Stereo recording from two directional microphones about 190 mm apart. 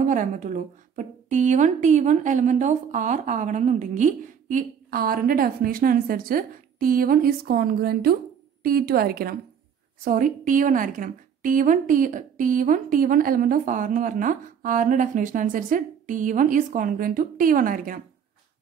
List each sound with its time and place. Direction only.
0.0 s a woman's voice: 40° right (ahead or behind)